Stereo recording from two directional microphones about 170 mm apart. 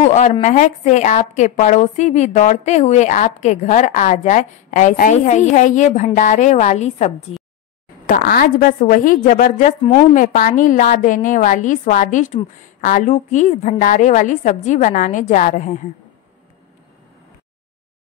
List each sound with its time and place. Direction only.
0.0 s a woman's voice: 45° left (ahead or behind)
8.1 s a woman's voice: 55° left (ahead or behind)